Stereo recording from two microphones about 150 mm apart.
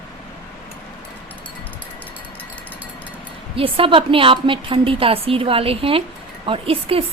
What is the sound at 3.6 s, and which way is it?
A woman's voice, 35° right (ahead or behind).